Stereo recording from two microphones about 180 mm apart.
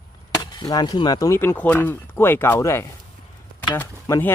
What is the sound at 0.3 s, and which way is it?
Speech, 20° left (ahead or behind).